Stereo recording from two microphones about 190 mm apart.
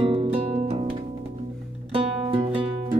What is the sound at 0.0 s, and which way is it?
Music, 30° right (ahead or behind).